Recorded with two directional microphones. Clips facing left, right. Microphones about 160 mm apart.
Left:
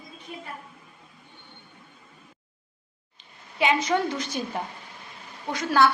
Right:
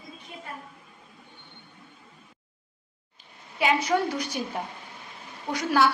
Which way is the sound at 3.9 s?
10° right (ahead or behind).